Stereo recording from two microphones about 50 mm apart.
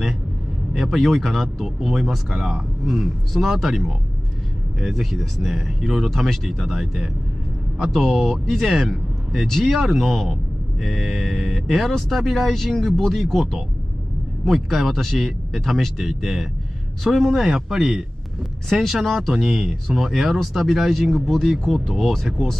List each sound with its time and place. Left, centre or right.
0.7 s speech: centre
2.3 s speech: centre
2.9 s speech: centre
17.5 s speech: centre
18.7 s speech: centre